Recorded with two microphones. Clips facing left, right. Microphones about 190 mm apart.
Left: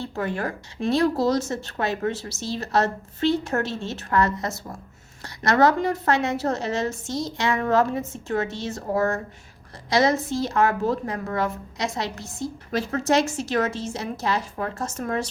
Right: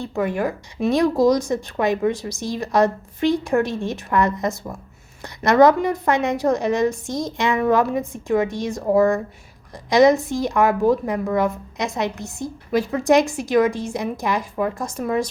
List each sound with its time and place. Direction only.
0.2 s a woman's voice: 15° right (ahead or behind)